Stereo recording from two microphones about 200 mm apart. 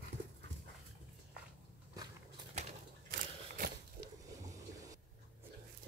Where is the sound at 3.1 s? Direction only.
50° right (ahead or behind).